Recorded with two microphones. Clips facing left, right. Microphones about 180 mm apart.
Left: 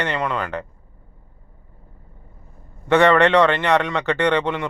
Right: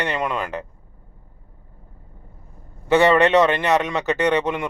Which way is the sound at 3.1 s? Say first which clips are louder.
Even; 10° right (ahead or behind).